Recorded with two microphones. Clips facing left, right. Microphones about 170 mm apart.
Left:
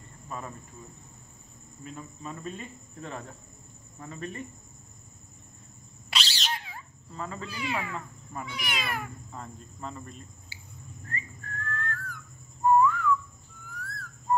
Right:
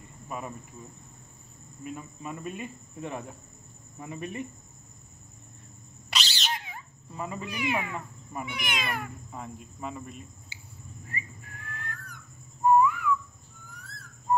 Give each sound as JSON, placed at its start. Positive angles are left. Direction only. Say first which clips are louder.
{"t": 0.3, "sound": "cricket", "louder": "right 2 dB", "side_deg": -10}
{"t": 1.9, "sound": "cricket", "louder": "right 2 dB", "side_deg": -10}
{"t": 6.0, "sound": "owl", "louder": "even", "side_deg": 0}
{"t": 6.5, "sound": "cat", "louder": "right 1 dB", "side_deg": -20}
{"t": 8.6, "sound": "cat", "louder": "even", "side_deg": 0}
{"t": 9.3, "sound": "cricket", "louder": "right 2 dB", "side_deg": -10}
{"t": 11.1, "sound": "whistling", "louder": "left 2 dB", "side_deg": -10}